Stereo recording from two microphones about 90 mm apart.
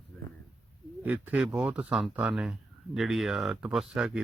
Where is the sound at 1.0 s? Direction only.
15° right (ahead or behind).